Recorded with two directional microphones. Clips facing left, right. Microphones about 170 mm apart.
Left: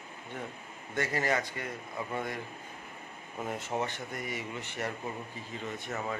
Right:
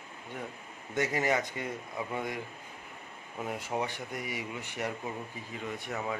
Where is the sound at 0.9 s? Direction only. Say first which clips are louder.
Right 1 dB; 15° right (ahead or behind).